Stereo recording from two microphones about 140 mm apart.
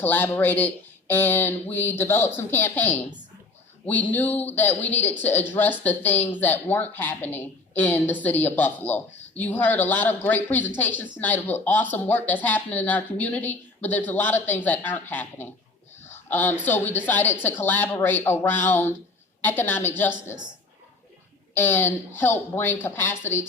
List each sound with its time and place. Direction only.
0.0 s speech: 15° left (ahead or behind)
16.0 s a sound: 15° left (ahead or behind)
16.6 s speech: 15° left (ahead or behind)
21.5 s speech: 15° left (ahead or behind)